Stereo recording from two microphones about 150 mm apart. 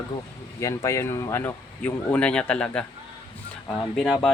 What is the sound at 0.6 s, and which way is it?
Speech, 20° left (ahead or behind).